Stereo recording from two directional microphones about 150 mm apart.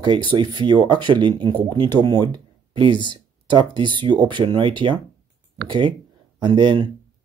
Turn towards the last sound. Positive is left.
turn(degrees=-30)  # may be behind; listen again after turning